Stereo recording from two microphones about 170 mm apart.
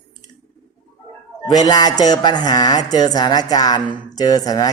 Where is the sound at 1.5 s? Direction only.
20° left (ahead or behind).